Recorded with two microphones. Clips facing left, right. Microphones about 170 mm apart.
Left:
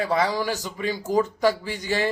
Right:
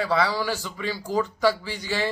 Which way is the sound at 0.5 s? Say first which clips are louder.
Left 3 dB; 40° left (ahead or behind).